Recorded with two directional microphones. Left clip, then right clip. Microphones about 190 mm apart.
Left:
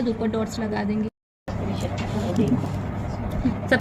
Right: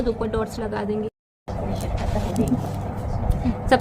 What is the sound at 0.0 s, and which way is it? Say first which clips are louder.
Speech: right 1 dB; 40° right (ahead or behind).